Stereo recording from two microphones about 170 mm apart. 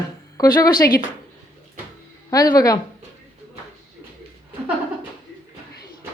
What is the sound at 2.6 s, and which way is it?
Speech, 20° left (ahead or behind).